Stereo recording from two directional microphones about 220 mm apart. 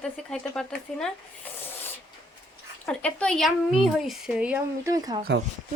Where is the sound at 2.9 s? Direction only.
5° left (ahead or behind).